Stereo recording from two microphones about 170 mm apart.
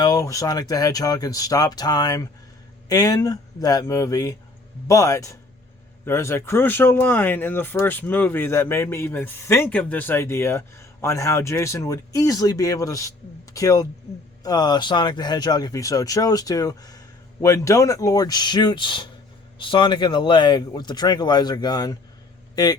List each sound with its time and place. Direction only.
0.0 s speech: 20° left (ahead or behind)